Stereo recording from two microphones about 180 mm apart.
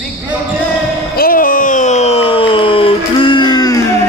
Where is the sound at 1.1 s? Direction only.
50° left (ahead or behind); by 4.0 s 15° left (ahead or behind).